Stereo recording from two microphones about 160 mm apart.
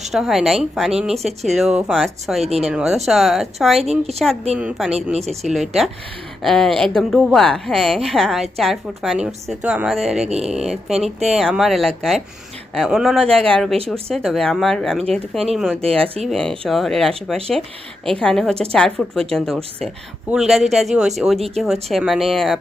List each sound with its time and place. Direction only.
0.0 s a woman's voice: centre (ahead or behind)
2.4 s a woman's voice: 40° right (ahead or behind)
2.6 s a woman's voice: 5° right (ahead or behind)
3.8 s a woman's voice: 40° right (ahead or behind)
4.5 s a woman's voice: 5° right (ahead or behind)
10.2 s a sound: 45° right (ahead or behind)
10.5 s a woman's voice: 5° right (ahead or behind)
20.3 s a woman's voice: centre (ahead or behind)